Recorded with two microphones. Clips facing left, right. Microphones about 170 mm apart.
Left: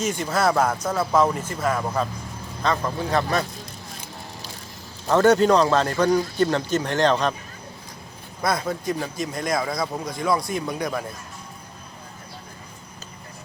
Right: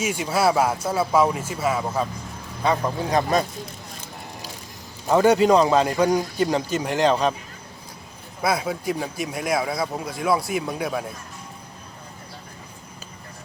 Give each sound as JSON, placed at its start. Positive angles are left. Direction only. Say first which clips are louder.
{"t": 0.0, "sound": "a man's voice", "louder": "right 1 dB", "side_deg": -10}
{"t": 5.0, "sound": "a man's voice", "louder": "even", "side_deg": -10}
{"t": 8.4, "sound": "a man's voice", "louder": "right 1 dB", "side_deg": -5}